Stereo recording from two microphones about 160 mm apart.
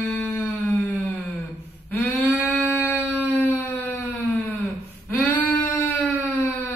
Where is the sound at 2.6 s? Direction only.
10° right (ahead or behind).